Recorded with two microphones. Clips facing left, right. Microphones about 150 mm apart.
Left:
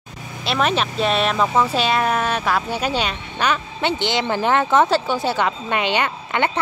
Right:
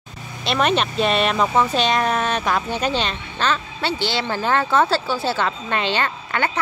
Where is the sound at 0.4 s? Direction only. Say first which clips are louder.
Right 1 dB; centre (ahead or behind).